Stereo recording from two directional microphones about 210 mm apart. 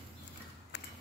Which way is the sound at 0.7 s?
55° left (ahead or behind).